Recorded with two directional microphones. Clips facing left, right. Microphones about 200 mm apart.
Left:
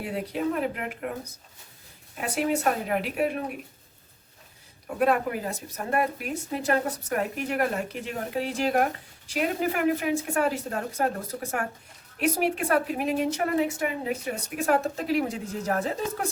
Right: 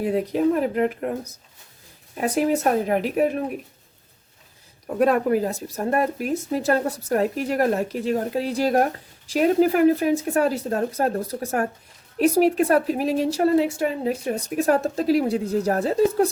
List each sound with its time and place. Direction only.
0.0 s a woman's voice: 40° right (ahead or behind)
2.2 s a woman's voice: 40° right (ahead or behind)
4.9 s a woman's voice: 40° right (ahead or behind)